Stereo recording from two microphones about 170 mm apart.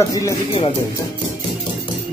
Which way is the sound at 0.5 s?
30° left (ahead or behind).